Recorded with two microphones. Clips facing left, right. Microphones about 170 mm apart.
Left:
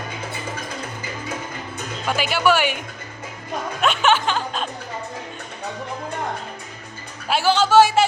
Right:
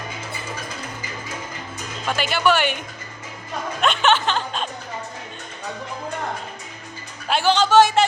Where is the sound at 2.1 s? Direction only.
10° left (ahead or behind).